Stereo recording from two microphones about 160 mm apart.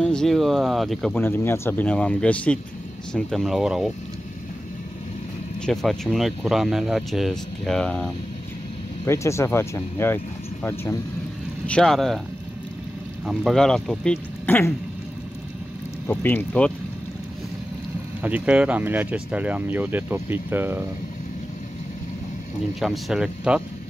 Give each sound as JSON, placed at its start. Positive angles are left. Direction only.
{"t": 0.0, "sound": "speech", "side_deg": 5}
{"t": 1.1, "sound": "speech", "side_deg": 15}
{"t": 5.7, "sound": "speech", "side_deg": 0}
{"t": 9.0, "sound": "speech", "side_deg": 20}
{"t": 13.2, "sound": "speech", "side_deg": 0}
{"t": 16.1, "sound": "speech", "side_deg": 10}
{"t": 18.2, "sound": "speech", "side_deg": -5}
{"t": 22.8, "sound": "speech", "side_deg": 0}